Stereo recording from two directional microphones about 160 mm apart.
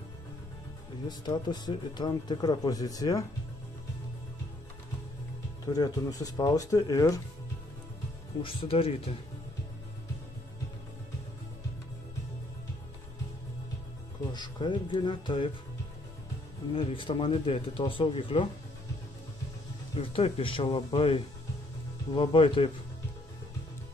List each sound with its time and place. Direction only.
1.0 s speech: 25° left (ahead or behind)
5.7 s speech: 25° left (ahead or behind)
8.4 s speech: 35° left (ahead or behind)
14.3 s speech: 30° left (ahead or behind)
16.7 s speech: 35° left (ahead or behind)
20.0 s speech: 35° left (ahead or behind)